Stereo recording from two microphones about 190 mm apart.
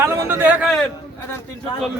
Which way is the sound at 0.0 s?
10° right (ahead or behind).